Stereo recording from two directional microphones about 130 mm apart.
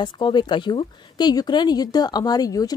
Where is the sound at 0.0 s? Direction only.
35° left (ahead or behind).